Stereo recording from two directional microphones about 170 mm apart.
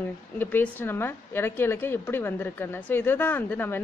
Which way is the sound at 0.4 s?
10° left (ahead or behind).